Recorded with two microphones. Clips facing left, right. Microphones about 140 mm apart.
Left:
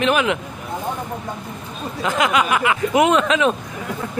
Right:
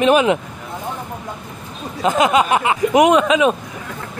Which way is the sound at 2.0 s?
25° right (ahead or behind).